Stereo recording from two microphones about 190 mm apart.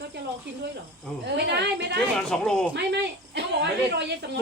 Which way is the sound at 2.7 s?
60° right (ahead or behind).